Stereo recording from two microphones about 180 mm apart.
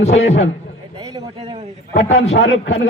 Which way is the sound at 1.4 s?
35° right (ahead or behind).